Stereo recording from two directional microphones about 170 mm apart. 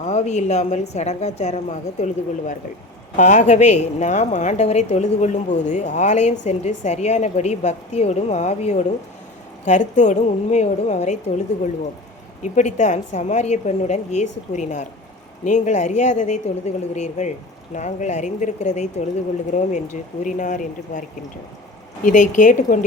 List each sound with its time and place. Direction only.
0.0 s a woman's voice: 40° left (ahead or behind)
3.2 s a woman's voice: 45° left (ahead or behind)
12.4 s a woman's voice: 45° left (ahead or behind)
22.0 s a woman's voice: 50° left (ahead or behind)